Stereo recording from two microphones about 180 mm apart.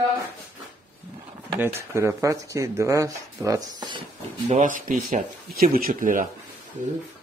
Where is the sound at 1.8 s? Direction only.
15° right (ahead or behind).